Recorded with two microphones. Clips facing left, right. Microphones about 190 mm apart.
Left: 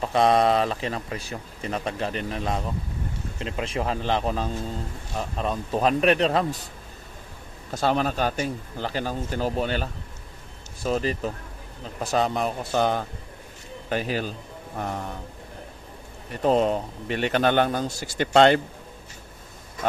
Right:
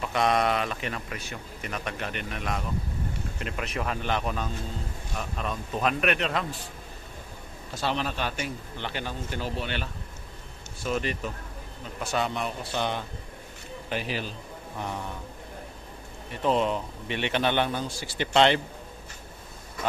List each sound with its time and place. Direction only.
0.0 s speech: 30° left (ahead or behind)
7.7 s a man's voice: 45° left (ahead or behind)
16.4 s a man's voice: 40° left (ahead or behind)